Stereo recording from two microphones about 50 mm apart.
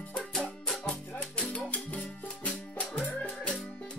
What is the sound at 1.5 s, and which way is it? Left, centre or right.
Music, left.